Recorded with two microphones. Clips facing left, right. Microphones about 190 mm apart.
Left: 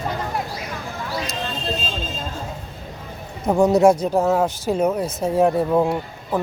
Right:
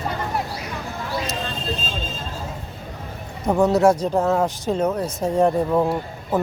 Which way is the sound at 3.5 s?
10° left (ahead or behind).